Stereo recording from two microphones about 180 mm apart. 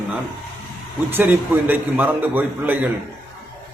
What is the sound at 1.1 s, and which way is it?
Speech, 10° right (ahead or behind).